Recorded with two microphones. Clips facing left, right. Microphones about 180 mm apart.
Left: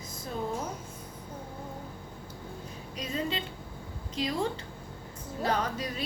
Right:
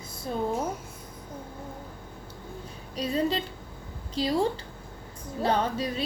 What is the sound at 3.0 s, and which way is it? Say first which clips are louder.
A woman's voice: right 6 dB; 35° right (ahead or behind).